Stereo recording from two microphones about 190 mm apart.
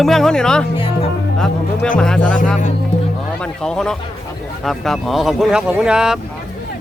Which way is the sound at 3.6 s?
5° left (ahead or behind).